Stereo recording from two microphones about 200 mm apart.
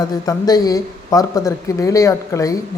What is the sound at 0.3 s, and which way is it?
Speech, 20° left (ahead or behind).